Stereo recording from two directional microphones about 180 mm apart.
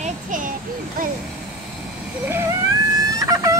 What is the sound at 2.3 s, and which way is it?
Speech, 10° right (ahead or behind).